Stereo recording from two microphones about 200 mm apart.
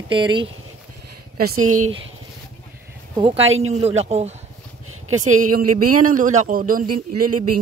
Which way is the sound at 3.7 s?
30° right (ahead or behind).